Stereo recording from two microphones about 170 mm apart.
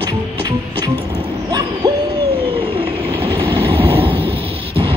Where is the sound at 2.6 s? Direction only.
30° right (ahead or behind).